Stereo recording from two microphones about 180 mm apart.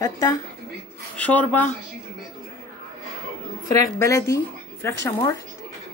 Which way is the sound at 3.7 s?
15° left (ahead or behind).